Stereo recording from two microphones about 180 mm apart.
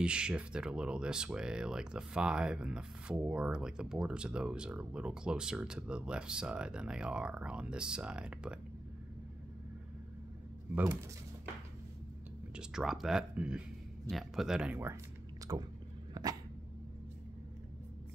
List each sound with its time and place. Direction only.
0.0 s speech: 5° right (ahead or behind)
12.5 s speech: 5° right (ahead or behind)
15.5 s chewing: 20° right (ahead or behind)
16.1 s dog: 20° right (ahead or behind)